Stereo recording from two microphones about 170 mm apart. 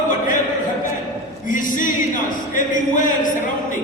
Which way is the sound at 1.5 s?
50° left (ahead or behind).